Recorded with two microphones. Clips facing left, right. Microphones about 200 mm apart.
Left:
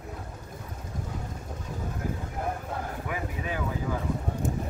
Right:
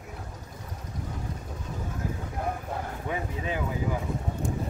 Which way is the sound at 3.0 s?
20° right (ahead or behind).